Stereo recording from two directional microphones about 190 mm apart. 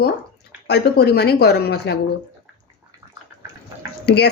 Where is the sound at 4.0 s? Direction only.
60° left (ahead or behind).